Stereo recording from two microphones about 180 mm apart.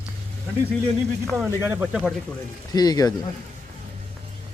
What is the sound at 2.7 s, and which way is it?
Speech, 20° left (ahead or behind).